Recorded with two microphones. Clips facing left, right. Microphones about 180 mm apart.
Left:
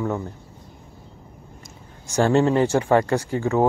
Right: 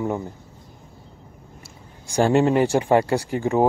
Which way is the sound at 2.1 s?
15° right (ahead or behind).